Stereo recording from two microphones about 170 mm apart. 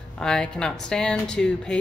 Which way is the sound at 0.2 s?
5° left (ahead or behind).